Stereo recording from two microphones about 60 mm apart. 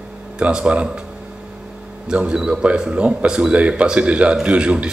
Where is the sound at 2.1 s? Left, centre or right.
Centre.